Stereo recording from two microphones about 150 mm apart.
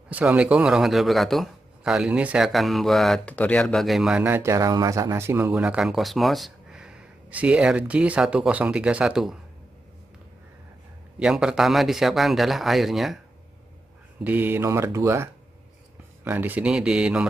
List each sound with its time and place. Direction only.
0.1 s a man's voice: 10° right (ahead or behind)
4.3 s speech: 20° right (ahead or behind)
5.5 s a man's voice: 5° right (ahead or behind)
11.1 s a man's voice: 5° right (ahead or behind)
14.2 s speech: 10° right (ahead or behind)
16.3 s speech: 10° right (ahead or behind)